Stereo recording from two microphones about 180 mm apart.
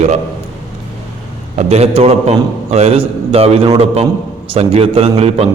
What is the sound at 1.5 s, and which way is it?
A man's voice, 35° right (ahead or behind).